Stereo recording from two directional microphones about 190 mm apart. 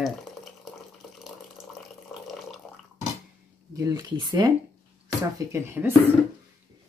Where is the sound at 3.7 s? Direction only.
20° right (ahead or behind).